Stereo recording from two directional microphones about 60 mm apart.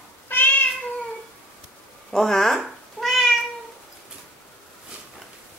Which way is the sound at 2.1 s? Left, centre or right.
Centre.